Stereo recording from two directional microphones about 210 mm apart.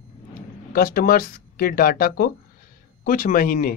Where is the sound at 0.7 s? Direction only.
45° left (ahead or behind).